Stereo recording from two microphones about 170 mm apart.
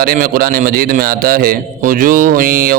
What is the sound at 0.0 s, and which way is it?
A man's voice, 60° right (ahead or behind).